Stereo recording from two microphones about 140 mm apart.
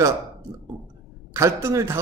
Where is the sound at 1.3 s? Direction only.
20° right (ahead or behind).